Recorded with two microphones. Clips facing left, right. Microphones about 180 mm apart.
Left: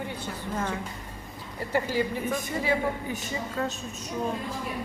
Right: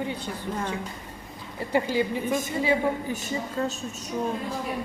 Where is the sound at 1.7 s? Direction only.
20° right (ahead or behind).